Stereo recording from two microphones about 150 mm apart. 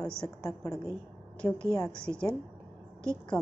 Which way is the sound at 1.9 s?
5° left (ahead or behind).